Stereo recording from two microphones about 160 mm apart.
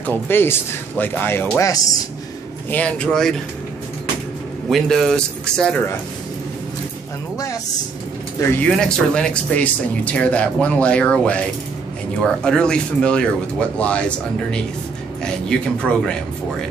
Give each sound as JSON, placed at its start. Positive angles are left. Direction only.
{"t": 0.0, "sound": "speech", "side_deg": 15}
{"t": 2.7, "sound": "speech", "side_deg": 5}
{"t": 4.6, "sound": "speech", "side_deg": 0}
{"t": 8.4, "sound": "speech", "side_deg": 10}